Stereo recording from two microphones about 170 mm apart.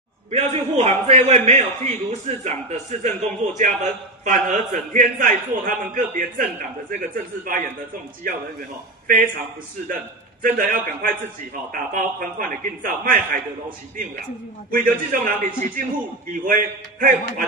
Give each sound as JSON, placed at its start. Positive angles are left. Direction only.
{"t": 0.3, "sound": "a man's voice", "side_deg": -40}
{"t": 9.0, "sound": "a man's voice", "side_deg": -50}
{"t": 10.4, "sound": "a man's voice", "side_deg": -50}
{"t": 14.7, "sound": "a man's voice", "side_deg": -55}